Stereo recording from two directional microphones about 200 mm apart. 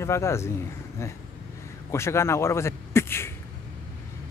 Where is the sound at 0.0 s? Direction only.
15° left (ahead or behind).